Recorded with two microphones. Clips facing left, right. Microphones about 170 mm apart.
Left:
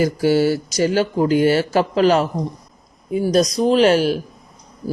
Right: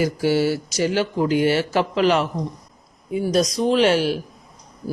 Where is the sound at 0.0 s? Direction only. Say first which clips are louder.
Left 3 dB; 45° left (ahead or behind).